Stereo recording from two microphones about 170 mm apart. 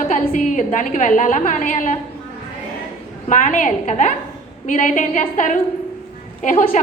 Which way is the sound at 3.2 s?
50° left (ahead or behind).